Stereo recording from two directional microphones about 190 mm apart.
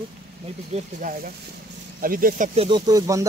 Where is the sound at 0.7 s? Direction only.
45° right (ahead or behind).